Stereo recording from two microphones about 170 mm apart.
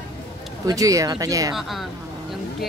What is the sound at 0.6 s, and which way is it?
Speech, 20° right (ahead or behind).